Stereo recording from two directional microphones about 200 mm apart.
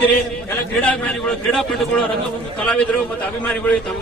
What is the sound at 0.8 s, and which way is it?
A man's voice, 5° left (ahead or behind).